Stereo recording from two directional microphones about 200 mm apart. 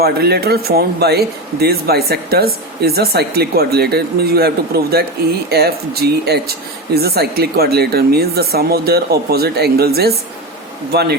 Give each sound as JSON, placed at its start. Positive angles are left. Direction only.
{"t": 0.0, "sound": "speech", "side_deg": -55}